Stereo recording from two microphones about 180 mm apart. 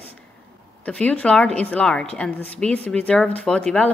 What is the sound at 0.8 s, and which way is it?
A woman's voice, 5° left (ahead or behind).